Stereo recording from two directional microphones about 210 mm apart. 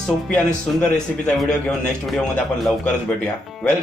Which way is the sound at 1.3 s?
5° left (ahead or behind).